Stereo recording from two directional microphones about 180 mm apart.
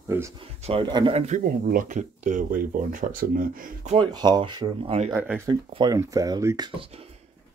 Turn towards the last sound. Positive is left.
turn(degrees=-35)  # may be behind; listen again after turning